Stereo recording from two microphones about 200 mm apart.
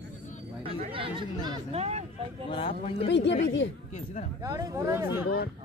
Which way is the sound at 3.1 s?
60° left (ahead or behind).